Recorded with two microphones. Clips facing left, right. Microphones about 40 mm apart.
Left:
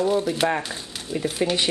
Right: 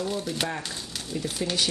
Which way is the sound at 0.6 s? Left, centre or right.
Centre.